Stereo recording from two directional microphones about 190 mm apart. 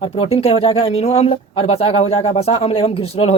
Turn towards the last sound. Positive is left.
turn(degrees=30)  # may be behind; listen again after turning